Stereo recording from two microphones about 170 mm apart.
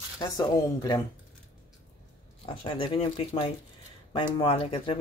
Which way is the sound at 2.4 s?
30° left (ahead or behind).